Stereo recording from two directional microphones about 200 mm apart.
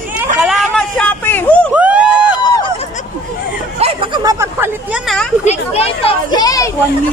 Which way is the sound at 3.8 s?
25° right (ahead or behind).